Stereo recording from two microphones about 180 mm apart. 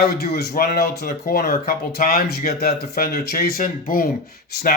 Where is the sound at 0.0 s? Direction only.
60° left (ahead or behind).